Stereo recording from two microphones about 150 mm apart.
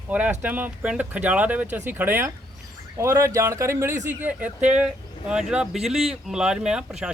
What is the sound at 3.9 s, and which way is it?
Speech, 55° right (ahead or behind).